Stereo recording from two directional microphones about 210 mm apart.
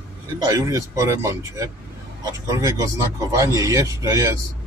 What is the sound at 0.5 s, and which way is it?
Speech, 15° right (ahead or behind).